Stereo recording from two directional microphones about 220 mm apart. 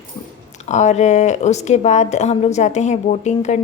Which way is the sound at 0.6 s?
30° left (ahead or behind).